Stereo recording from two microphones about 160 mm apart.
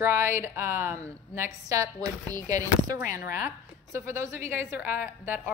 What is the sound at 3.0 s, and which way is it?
Speech, 60° left (ahead or behind).